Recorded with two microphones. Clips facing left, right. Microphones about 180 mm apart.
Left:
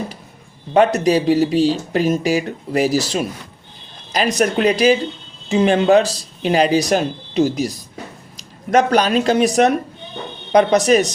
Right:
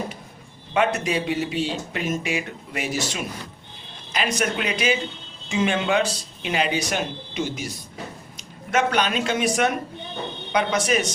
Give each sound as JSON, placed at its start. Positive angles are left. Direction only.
{"t": 0.7, "sound": "speech", "side_deg": 40}